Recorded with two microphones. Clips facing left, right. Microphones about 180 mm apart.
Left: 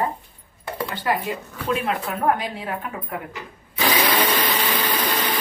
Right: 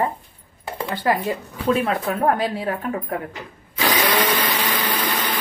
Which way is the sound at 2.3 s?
35° right (ahead or behind).